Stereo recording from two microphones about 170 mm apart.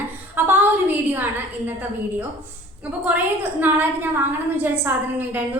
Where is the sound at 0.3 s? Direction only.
10° right (ahead or behind).